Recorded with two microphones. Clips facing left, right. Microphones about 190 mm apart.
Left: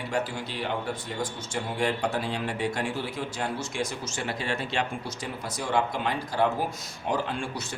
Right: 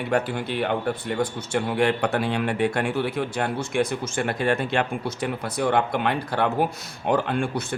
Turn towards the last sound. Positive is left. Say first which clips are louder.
# right 7 dB
turn(degrees=-55)  # may be behind; listen again after turning